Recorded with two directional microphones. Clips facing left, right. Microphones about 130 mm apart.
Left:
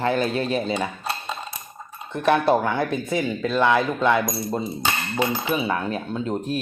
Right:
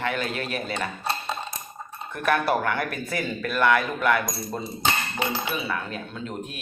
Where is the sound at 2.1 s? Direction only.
25° left (ahead or behind).